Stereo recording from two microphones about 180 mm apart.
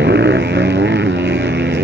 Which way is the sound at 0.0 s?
75° right (ahead or behind).